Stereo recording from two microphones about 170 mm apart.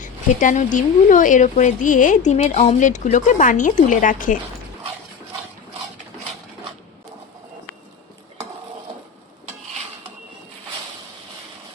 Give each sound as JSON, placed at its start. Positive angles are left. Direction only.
{"t": 0.0, "sound": "speech", "side_deg": 45}